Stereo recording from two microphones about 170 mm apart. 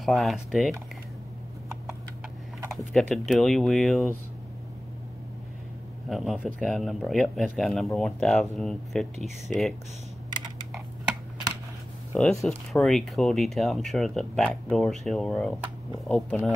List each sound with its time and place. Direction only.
0.0 s speech: centre (ahead or behind)
2.9 s speech: 5° left (ahead or behind)
6.0 s speech: centre (ahead or behind)
10.3 s computer keyboard: 25° right (ahead or behind)
12.2 s speech: 5° left (ahead or behind)